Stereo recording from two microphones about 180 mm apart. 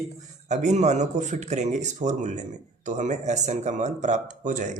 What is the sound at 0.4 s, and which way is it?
Speech, 40° right (ahead or behind).